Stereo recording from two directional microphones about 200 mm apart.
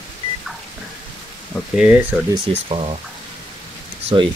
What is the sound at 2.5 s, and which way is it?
Speech, 30° right (ahead or behind).